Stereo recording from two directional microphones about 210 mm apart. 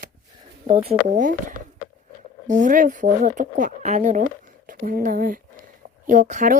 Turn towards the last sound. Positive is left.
turn(degrees=-35)  # may be behind; listen again after turning